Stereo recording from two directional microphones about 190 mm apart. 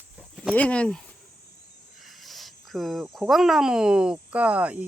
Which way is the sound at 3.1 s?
Centre (ahead or behind).